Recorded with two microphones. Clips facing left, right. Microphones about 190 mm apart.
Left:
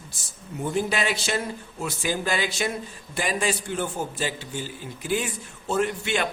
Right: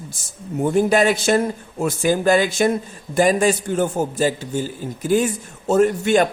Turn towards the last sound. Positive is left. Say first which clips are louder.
# right 10 dB
turn(degrees=-45)  # may be behind; listen again after turning